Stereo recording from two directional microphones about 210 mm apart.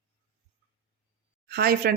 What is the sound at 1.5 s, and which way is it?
Speech, 45° right (ahead or behind).